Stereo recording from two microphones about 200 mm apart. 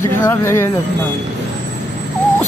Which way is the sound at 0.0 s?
10° left (ahead or behind).